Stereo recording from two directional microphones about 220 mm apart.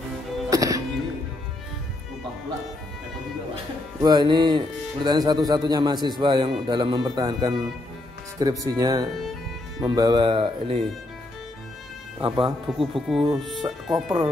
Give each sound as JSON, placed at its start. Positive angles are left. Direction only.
{"t": 0.5, "sound": "music", "side_deg": -15}
{"t": 4.0, "sound": "speech", "side_deg": -20}
{"t": 12.2, "sound": "speech", "side_deg": -25}
{"t": 12.9, "sound": "speech", "side_deg": 0}
{"t": 14.0, "sound": "speech", "side_deg": -20}